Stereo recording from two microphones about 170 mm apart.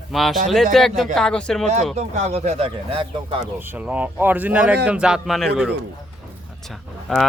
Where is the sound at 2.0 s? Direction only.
40° right (ahead or behind).